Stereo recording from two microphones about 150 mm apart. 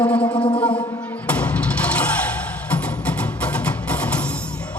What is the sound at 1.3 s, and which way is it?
Music, 10° left (ahead or behind).